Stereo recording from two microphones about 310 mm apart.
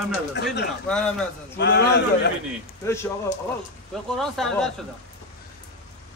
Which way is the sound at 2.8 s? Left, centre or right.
Centre.